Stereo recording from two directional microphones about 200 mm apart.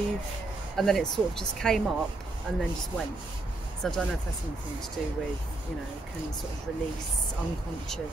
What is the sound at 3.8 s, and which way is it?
Speech, centre (ahead or behind).